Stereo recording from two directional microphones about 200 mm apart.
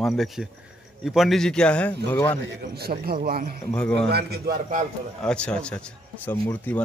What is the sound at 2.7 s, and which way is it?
A man's voice, 50° right (ahead or behind).